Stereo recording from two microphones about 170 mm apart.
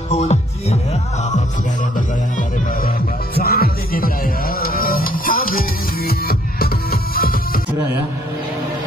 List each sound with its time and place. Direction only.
0.1 s music: 40° left (ahead or behind)
2.0 s music: 55° left (ahead or behind)